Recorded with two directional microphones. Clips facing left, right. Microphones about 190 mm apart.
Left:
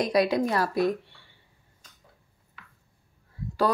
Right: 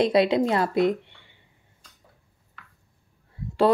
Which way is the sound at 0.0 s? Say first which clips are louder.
Right 3 dB; 25° right (ahead or behind).